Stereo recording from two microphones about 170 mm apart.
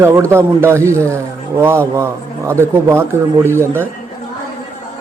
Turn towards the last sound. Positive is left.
turn(degrees=-15)  # may be behind; listen again after turning